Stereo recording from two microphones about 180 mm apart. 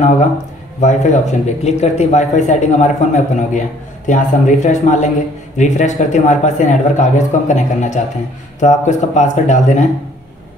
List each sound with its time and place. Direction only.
0.7 s speech: 40° left (ahead or behind)